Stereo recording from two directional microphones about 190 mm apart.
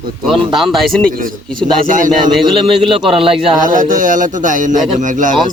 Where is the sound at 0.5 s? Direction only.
Centre (ahead or behind).